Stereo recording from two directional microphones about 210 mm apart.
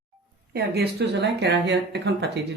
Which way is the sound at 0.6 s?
50° right (ahead or behind).